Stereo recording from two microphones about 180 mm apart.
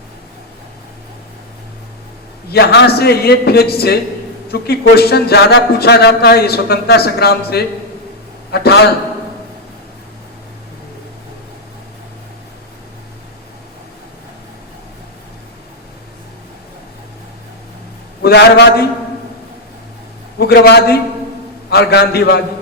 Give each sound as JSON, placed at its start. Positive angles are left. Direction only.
{"t": 2.5, "sound": "speech", "side_deg": 60}
{"t": 18.2, "sound": "speech", "side_deg": 65}
{"t": 20.4, "sound": "speech", "side_deg": 65}